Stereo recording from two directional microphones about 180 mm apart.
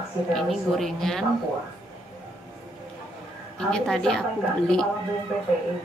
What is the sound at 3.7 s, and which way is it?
Speech, centre (ahead or behind).